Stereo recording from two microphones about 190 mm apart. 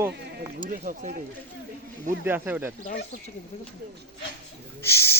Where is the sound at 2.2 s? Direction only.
10° right (ahead or behind).